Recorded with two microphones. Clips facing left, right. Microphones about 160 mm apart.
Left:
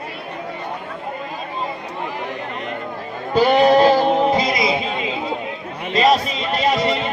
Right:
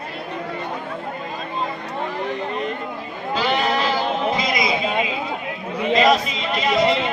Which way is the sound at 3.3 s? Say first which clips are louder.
Left 8 dB; 45° left (ahead or behind).